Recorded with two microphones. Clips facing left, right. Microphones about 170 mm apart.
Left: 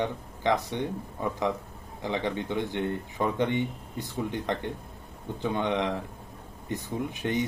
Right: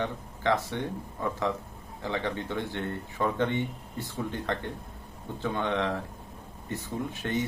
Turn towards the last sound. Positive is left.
turn(degrees=15)  # may be behind; listen again after turning